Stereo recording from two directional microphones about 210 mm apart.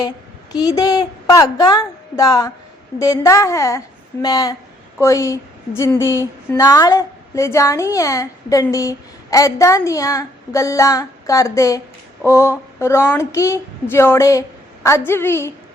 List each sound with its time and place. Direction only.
0.5 s a woman's voice: 15° left (ahead or behind)